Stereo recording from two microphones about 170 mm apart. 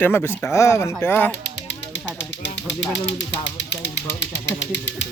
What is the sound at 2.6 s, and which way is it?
Speech, 90° left.